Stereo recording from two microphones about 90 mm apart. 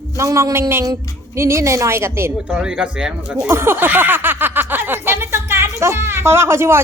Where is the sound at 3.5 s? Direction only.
30° right (ahead or behind).